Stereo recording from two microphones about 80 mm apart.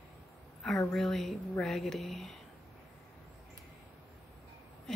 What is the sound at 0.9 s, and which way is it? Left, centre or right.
A woman's voice, centre.